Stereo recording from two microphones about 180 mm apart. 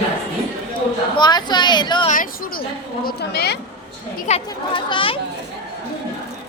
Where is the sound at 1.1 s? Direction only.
25° left (ahead or behind).